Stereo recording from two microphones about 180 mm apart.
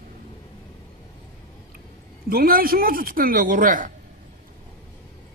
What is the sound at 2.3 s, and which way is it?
A man's voice, 55° right (ahead or behind).